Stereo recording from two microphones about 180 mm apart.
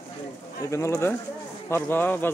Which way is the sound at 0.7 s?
15° left (ahead or behind).